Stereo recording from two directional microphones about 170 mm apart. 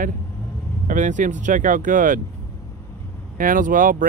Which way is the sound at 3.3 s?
55° right (ahead or behind).